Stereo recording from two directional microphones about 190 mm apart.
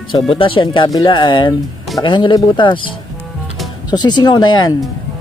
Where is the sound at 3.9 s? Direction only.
20° left (ahead or behind).